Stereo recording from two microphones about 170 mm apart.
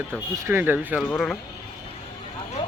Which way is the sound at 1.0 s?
5° left (ahead or behind).